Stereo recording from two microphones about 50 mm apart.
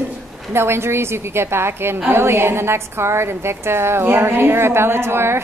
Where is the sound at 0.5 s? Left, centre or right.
Right.